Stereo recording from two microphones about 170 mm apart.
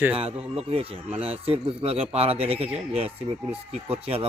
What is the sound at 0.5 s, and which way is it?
Speech, 35° right (ahead or behind).